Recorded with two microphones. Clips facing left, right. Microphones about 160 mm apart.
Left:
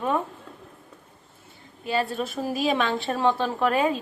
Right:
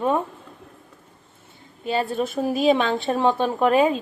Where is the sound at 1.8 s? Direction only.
20° right (ahead or behind).